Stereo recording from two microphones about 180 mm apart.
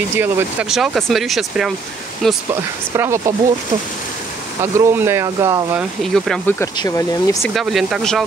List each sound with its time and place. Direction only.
0.2 s speech: 10° right (ahead or behind)
2.9 s speech: 15° right (ahead or behind)
4.6 s speech: 15° right (ahead or behind)
5.8 s speech: centre (ahead or behind)
6.6 s speech: 20° left (ahead or behind)
7.4 s speech: centre (ahead or behind)